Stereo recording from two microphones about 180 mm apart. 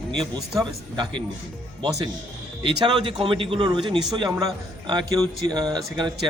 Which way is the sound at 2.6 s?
25° right (ahead or behind).